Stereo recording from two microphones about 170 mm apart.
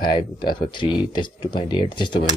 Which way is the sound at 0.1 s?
25° left (ahead or behind).